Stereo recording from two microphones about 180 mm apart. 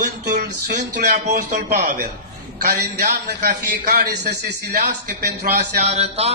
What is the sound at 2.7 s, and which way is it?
A man's voice, 55° right (ahead or behind).